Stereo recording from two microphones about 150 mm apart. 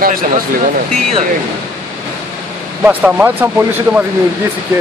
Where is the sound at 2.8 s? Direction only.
10° right (ahead or behind).